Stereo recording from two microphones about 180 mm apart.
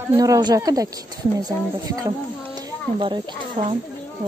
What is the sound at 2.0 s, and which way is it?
A woman's voice, 20° right (ahead or behind).